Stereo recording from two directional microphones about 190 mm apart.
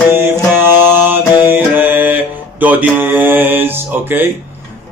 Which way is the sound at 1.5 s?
10° right (ahead or behind).